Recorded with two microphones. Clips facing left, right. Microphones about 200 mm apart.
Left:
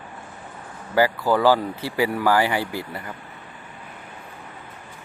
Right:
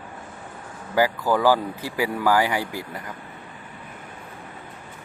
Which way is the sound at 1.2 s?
10° left (ahead or behind).